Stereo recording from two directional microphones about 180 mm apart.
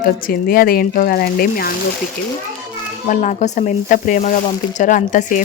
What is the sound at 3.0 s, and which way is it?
A woman's voice, 45° left (ahead or behind).